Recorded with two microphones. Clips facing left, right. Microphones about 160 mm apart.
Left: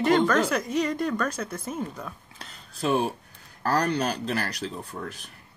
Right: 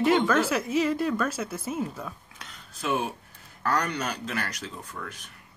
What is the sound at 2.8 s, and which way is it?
Speech, 35° left (ahead or behind).